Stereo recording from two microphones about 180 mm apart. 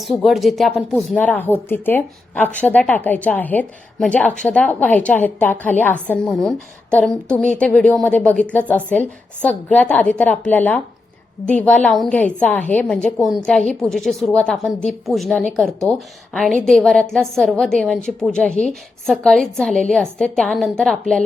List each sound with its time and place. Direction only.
0.0 s a woman's voice: centre (ahead or behind)